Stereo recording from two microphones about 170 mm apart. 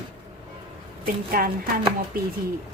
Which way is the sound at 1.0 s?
60° right (ahead or behind).